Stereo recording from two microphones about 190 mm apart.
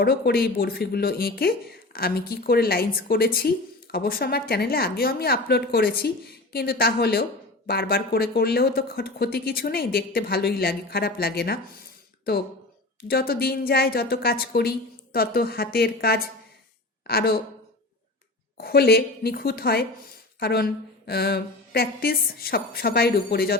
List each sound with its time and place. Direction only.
0.0 s speech: 55° left (ahead or behind)
13.1 s speech: 50° left (ahead or behind)
18.5 s a woman's voice: 55° left (ahead or behind)